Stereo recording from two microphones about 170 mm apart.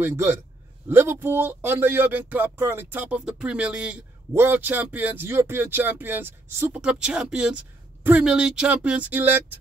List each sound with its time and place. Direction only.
0.0 s speech: 15° right (ahead or behind)